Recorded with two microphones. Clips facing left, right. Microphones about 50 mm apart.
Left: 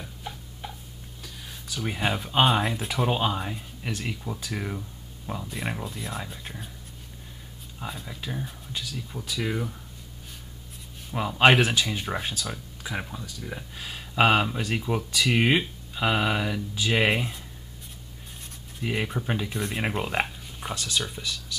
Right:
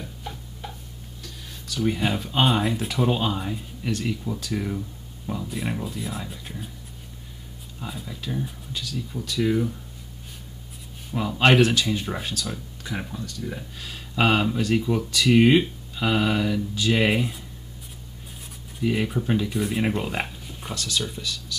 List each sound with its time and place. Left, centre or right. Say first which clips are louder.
0.0 s a sound: right 2 dB; centre
1.2 s speech: even; centre
7.8 s speech: right 1 dB; centre
11.1 s speech: right 1 dB; centre
18.8 s speech: right 5 dB; centre
20.2 s a sound: left 1 dB; centre
20.7 s speech: right 2 dB; centre